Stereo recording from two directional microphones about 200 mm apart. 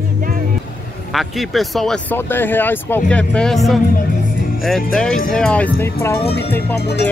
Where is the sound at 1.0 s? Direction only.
Centre (ahead or behind).